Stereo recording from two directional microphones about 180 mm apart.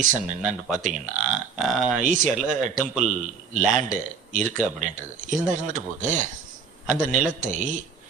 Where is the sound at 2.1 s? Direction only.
45° right (ahead or behind).